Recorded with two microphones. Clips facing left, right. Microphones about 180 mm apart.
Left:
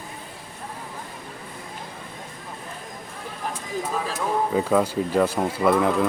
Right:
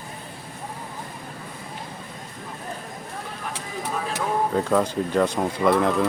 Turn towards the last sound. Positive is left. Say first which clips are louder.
# even
turn(degrees=0)  # may be behind; listen again after turning